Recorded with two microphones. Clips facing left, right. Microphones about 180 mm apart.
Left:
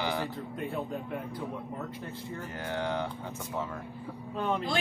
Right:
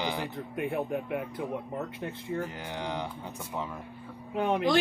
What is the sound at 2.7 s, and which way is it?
Speech, 15° right (ahead or behind).